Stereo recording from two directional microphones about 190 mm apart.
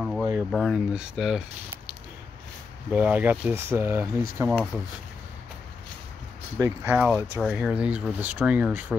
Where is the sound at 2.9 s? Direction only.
10° right (ahead or behind).